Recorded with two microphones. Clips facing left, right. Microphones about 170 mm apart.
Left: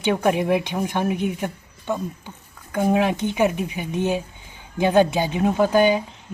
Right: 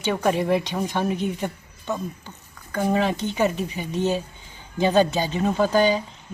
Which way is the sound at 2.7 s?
10° left (ahead or behind).